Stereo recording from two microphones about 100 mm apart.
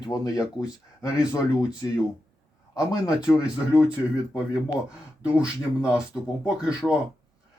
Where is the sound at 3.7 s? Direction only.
10° right (ahead or behind).